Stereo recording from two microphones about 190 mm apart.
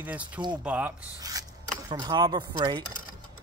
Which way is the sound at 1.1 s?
20° right (ahead or behind).